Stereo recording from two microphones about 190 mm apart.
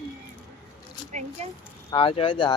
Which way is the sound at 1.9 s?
30° left (ahead or behind).